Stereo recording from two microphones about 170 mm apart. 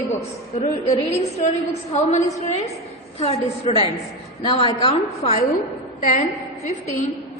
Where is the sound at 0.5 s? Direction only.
40° left (ahead or behind).